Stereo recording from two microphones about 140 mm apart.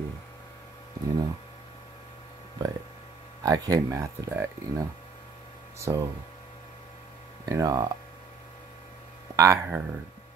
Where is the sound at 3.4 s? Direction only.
25° right (ahead or behind).